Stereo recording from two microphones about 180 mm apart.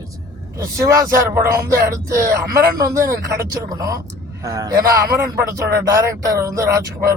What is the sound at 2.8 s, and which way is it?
A man's voice, 20° right (ahead or behind).